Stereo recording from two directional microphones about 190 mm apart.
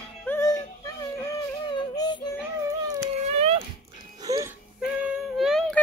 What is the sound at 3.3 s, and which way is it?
Dog, 30° right (ahead or behind).